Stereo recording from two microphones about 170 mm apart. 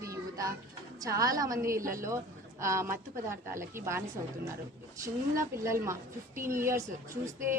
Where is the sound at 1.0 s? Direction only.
20° right (ahead or behind).